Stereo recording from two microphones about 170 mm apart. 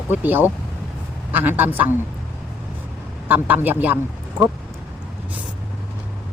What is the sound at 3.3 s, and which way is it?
Speech, 10° right (ahead or behind).